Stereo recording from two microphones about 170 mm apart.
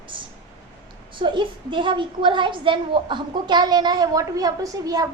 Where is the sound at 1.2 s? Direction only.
30° right (ahead or behind).